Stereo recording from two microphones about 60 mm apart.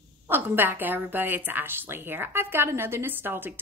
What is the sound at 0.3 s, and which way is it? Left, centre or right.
A woman's voice, right.